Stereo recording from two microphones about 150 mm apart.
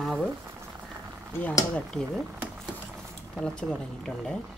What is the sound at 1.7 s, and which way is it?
Speech, 5° left (ahead or behind).